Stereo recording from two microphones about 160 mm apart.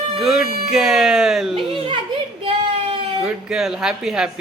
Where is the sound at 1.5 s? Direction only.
35° right (ahead or behind).